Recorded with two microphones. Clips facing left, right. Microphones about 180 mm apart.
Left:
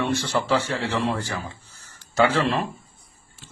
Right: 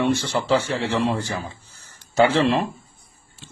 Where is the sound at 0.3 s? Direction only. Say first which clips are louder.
Right 2 dB; 15° right (ahead or behind).